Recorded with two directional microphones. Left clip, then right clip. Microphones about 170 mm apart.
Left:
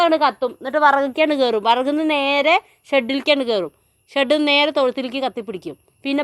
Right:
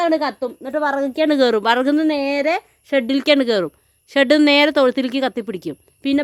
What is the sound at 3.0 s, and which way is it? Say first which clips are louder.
Speech: right 2 dB; 45° right (ahead or behind).